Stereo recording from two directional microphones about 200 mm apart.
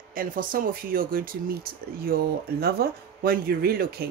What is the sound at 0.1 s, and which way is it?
Speech, 45° right (ahead or behind).